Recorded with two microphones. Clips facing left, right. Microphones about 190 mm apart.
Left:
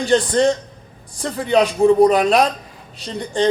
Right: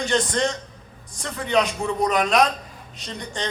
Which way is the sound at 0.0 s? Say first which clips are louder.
Left 7 dB; 35° left (ahead or behind).